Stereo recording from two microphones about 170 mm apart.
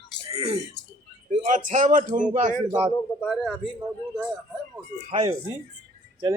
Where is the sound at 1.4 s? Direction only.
50° right (ahead or behind).